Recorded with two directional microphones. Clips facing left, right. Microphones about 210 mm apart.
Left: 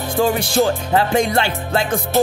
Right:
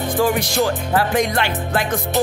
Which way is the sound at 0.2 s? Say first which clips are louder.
Left 2 dB; 25° left (ahead or behind).